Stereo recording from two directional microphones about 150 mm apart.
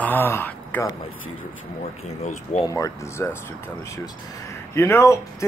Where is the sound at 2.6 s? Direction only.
20° left (ahead or behind).